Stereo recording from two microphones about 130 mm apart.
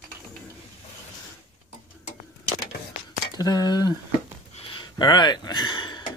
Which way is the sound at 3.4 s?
30° left (ahead or behind).